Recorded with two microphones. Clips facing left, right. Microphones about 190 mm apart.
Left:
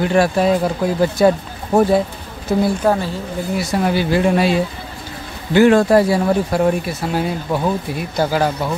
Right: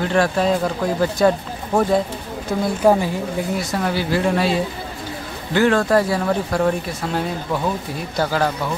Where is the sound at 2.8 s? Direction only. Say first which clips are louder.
Right 2 dB; 10° right (ahead or behind).